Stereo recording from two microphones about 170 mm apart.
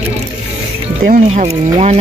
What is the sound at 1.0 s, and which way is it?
Speech, 40° right (ahead or behind).